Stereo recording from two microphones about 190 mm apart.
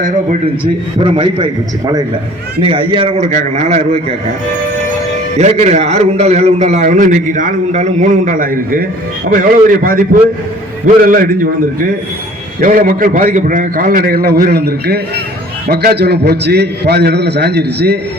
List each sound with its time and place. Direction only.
0.9 s a man's voice: 25° right (ahead or behind)
2.6 s a man's voice: 30° right (ahead or behind)
5.4 s a man's voice: 35° right (ahead or behind)
12.5 s a man's voice: 45° right (ahead or behind)